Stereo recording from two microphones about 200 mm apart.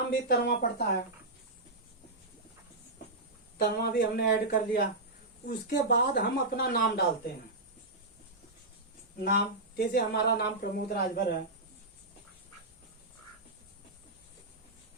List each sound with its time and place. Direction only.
0.1 s speech: 50° left (ahead or behind)
3.6 s speech: 50° left (ahead or behind)
9.7 s speech: 55° left (ahead or behind)